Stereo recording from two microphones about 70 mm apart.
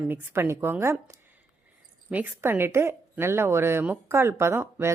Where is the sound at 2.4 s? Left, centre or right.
Right.